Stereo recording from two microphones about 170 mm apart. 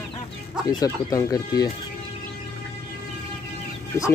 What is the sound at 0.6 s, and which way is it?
Speech, 20° left (ahead or behind).